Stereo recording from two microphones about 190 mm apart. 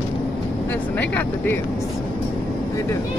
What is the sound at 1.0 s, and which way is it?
Speech, 10° left (ahead or behind).